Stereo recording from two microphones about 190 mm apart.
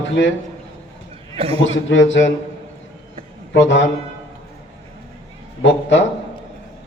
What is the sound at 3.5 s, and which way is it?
Speech, 75° left (ahead or behind).